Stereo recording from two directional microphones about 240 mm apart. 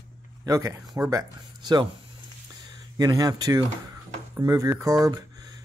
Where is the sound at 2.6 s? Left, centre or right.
Centre.